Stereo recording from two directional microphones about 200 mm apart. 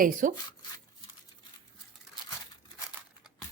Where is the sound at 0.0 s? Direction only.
40° right (ahead or behind).